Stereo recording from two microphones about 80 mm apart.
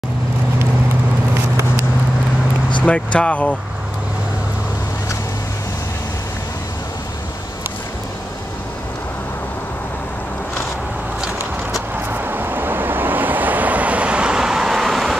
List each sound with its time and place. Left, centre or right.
2.8 s speech: centre
12.1 s vehicle: right; by 15.1 s centre